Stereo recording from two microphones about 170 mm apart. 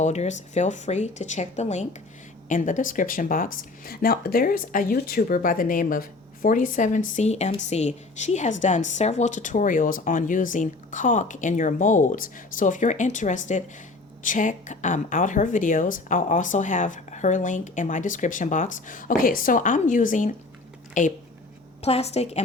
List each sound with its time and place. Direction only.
0.0 s a woman's voice: 40° left (ahead or behind)
21.8 s a woman's voice: 35° left (ahead or behind)